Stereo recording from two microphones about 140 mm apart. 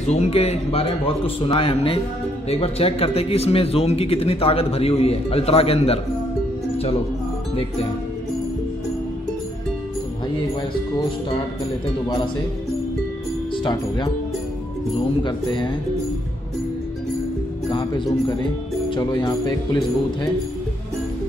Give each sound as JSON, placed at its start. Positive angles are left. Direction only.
{"t": 0.0, "sound": "speech", "side_deg": 50}
{"t": 13.7, "sound": "speech", "side_deg": 30}
{"t": 15.2, "sound": "speech", "side_deg": 35}
{"t": 17.6, "sound": "speech", "side_deg": 35}